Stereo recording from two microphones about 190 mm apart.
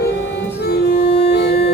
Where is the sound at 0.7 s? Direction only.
60° left (ahead or behind).